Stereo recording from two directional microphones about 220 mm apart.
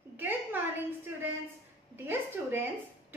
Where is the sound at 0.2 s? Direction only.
10° right (ahead or behind).